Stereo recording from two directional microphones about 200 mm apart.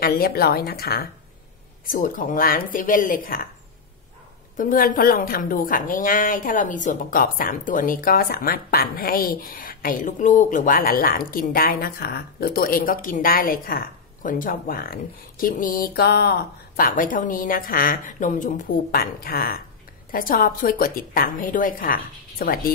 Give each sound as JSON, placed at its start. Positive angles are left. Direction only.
{"t": 0.0, "sound": "a woman's voice", "side_deg": 50}
{"t": 4.6, "sound": "a woman's voice", "side_deg": 45}